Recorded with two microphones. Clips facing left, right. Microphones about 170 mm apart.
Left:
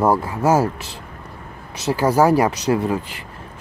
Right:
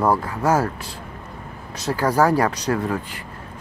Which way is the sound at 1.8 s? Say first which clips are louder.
Left 3 dB; 10° left (ahead or behind).